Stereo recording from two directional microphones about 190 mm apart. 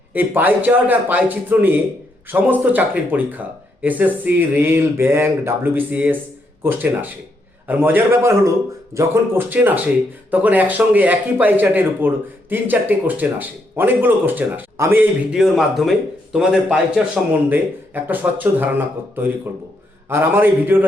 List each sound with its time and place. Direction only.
0.1 s speech: 10° right (ahead or behind)
20.1 s speech: 10° right (ahead or behind)